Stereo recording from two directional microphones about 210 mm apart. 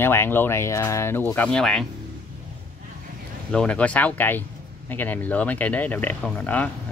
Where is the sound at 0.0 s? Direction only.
10° left (ahead or behind).